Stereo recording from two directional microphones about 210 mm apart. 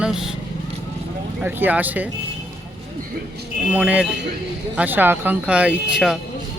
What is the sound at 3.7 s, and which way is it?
A man's voice, 5° right (ahead or behind).